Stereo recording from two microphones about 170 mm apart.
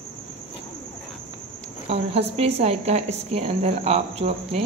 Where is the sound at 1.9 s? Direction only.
35° right (ahead or behind).